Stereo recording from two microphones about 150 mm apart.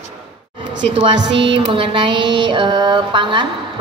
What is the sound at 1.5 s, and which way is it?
Mantra, 35° right (ahead or behind).